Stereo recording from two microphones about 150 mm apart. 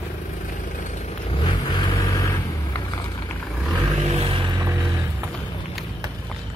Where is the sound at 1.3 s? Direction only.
35° left (ahead or behind).